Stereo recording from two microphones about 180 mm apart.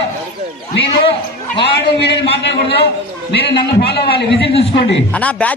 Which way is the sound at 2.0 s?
70° left (ahead or behind).